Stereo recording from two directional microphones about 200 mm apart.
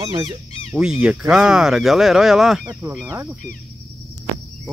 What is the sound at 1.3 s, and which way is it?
Speech, 5° right (ahead or behind).